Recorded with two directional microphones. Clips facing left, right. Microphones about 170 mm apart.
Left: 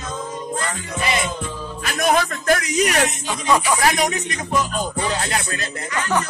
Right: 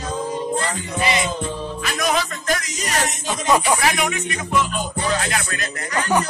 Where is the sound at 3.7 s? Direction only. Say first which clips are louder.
Left 2 dB; 40° left (ahead or behind).